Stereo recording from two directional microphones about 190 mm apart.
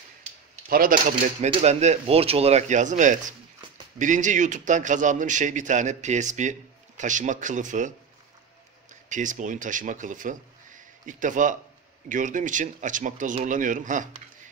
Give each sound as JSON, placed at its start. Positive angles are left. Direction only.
{"t": 0.7, "sound": "a man's voice", "side_deg": -50}
{"t": 9.1, "sound": "speech", "side_deg": -40}